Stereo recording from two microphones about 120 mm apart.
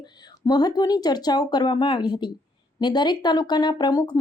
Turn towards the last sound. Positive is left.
turn(degrees=35)  # may be behind; listen again after turning